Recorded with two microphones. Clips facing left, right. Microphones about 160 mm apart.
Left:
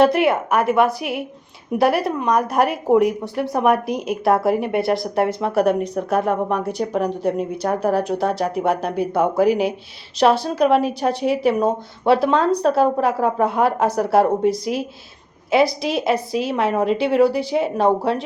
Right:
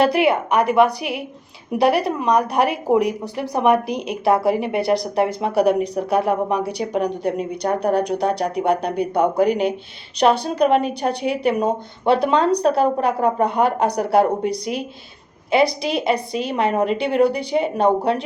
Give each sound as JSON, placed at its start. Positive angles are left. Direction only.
{"t": 0.0, "sound": "speech", "side_deg": 0}